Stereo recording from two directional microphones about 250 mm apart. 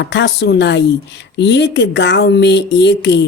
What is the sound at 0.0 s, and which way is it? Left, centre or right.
Speech, left.